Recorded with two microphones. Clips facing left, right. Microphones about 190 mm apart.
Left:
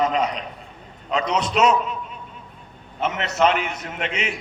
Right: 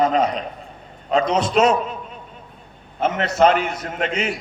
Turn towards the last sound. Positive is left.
turn(degrees=-35)  # may be behind; listen again after turning